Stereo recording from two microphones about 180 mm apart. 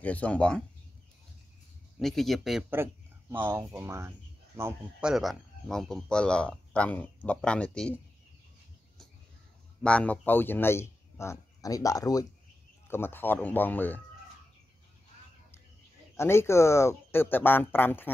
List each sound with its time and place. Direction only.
0.0 s speech: 10° left (ahead or behind)
2.0 s speech: centre (ahead or behind)
2.7 s a sound: 10° right (ahead or behind)
3.4 s speech: 15° right (ahead or behind)
5.0 s speech: centre (ahead or behind)
9.8 s speech: 5° left (ahead or behind)
16.2 s speech: 15° left (ahead or behind)